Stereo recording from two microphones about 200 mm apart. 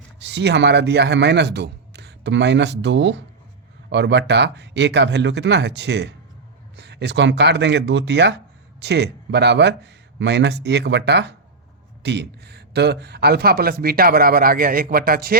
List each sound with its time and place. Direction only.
0.2 s speech: 60° right (ahead or behind)